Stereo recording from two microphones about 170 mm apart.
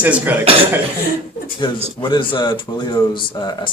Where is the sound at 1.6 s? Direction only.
30° left (ahead or behind).